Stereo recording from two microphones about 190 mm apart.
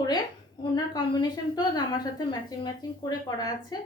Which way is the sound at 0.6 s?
20° left (ahead or behind).